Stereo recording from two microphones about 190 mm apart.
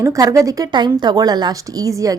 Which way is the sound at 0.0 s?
15° right (ahead or behind).